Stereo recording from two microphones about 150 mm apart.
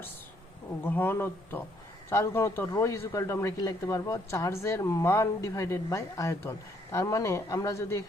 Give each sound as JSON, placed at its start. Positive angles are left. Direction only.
{"t": 0.9, "sound": "speech", "side_deg": 15}